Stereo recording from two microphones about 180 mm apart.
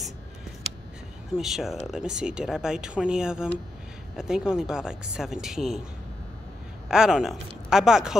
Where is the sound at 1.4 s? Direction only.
Centre (ahead or behind).